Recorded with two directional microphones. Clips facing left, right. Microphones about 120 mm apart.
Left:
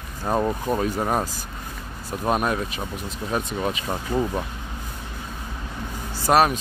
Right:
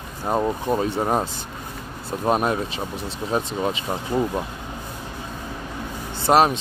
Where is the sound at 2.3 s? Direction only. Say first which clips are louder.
Right 2 dB; 30° right (ahead or behind).